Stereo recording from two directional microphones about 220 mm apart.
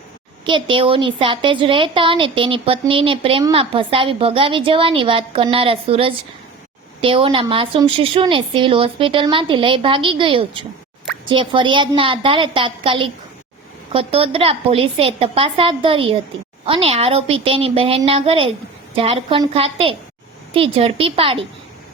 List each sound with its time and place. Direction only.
0.4 s a woman's voice: 20° right (ahead or behind)